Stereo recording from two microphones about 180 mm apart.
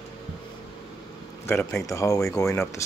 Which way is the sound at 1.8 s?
15° left (ahead or behind).